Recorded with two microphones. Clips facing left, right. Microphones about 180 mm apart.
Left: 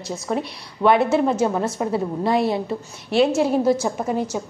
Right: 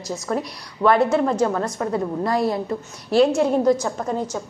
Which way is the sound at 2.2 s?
25° left (ahead or behind).